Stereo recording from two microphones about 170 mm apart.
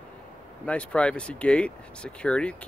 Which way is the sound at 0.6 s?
5° left (ahead or behind).